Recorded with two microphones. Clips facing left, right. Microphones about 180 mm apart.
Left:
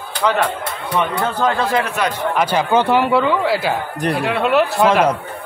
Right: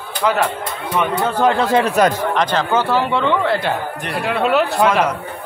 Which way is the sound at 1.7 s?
35° right (ahead or behind).